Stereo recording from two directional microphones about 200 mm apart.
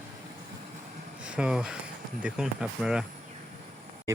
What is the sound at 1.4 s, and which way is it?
Speech, 5° right (ahead or behind).